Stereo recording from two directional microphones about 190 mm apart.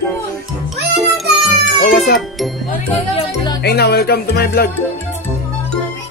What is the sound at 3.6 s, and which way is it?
Music, 60° left (ahead or behind).